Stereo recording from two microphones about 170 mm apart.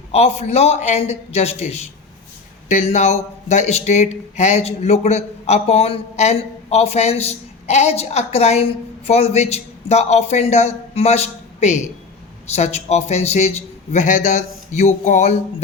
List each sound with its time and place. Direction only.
0.1 s speech: 40° left (ahead or behind)